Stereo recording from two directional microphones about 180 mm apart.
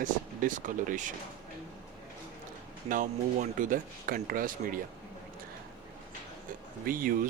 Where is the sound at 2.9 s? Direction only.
35° right (ahead or behind).